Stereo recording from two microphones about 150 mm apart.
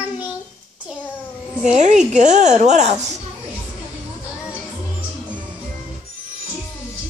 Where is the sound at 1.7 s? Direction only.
50° right (ahead or behind).